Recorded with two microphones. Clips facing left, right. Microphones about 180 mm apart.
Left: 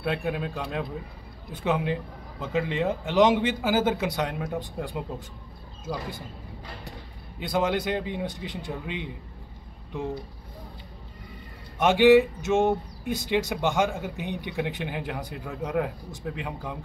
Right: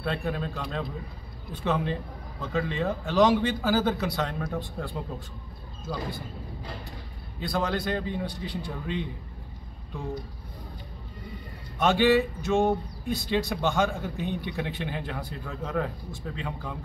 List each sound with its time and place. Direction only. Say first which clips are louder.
0.0 s speech: left 2 dB; 10° left (ahead or behind)
7.3 s a man's voice: left 3 dB; 20° left (ahead or behind)
11.8 s speech: left 4 dB; 15° left (ahead or behind)